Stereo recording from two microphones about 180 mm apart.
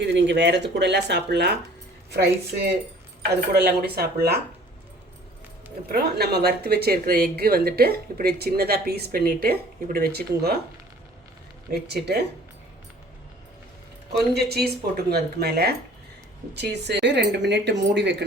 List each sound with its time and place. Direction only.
0.0 s speech: 75° right (ahead or behind); by 4.4 s 60° right (ahead or behind)
5.9 s speech: 60° right (ahead or behind)
11.7 s speech: 65° right (ahead or behind)
14.3 s speech: 60° right (ahead or behind)